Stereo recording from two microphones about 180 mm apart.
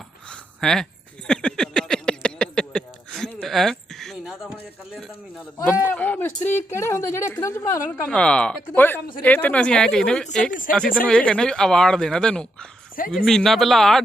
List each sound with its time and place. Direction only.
0.3 s a sound: 5° left (ahead or behind)
5.6 s a woman's voice: 10° left (ahead or behind)
8.1 s speech: 5° left (ahead or behind)
10.5 s speech: 50° left (ahead or behind)
11.0 s speech: 5° left (ahead or behind)